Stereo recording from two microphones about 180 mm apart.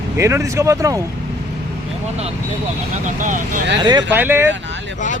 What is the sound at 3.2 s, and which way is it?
Speech, 45° right (ahead or behind).